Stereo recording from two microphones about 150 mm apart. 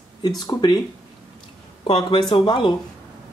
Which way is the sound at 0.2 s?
25° left (ahead or behind).